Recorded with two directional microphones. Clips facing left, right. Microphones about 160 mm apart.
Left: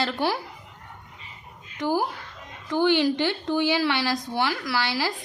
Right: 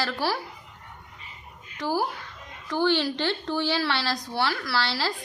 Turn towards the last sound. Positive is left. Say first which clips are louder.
# left 1 dB
turn(degrees=15)  # may be behind; listen again after turning